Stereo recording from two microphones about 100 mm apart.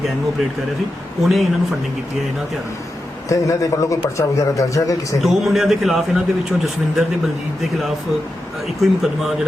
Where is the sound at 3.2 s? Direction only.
35° left (ahead or behind).